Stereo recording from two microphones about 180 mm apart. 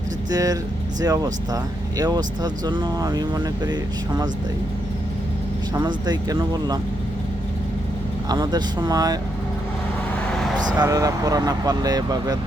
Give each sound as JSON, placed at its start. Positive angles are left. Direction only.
{"t": 0.3, "sound": "speech", "side_deg": -20}
{"t": 5.8, "sound": "speech", "side_deg": -20}
{"t": 8.3, "sound": "speech", "side_deg": -25}
{"t": 10.7, "sound": "speech", "side_deg": -20}